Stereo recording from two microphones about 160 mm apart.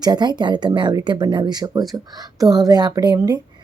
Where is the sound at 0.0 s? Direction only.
25° right (ahead or behind).